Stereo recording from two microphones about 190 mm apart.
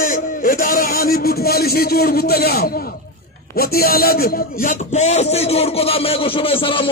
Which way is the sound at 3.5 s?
55° left (ahead or behind).